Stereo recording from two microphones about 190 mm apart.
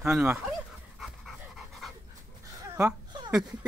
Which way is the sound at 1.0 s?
Centre (ahead or behind).